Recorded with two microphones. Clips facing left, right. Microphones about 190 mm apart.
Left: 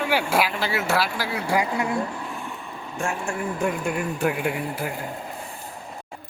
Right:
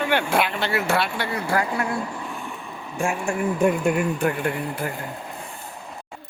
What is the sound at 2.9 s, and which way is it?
Speech, 10° right (ahead or behind).